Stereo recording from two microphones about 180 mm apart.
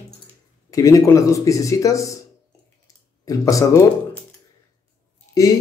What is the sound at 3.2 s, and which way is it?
Speech, 20° left (ahead or behind).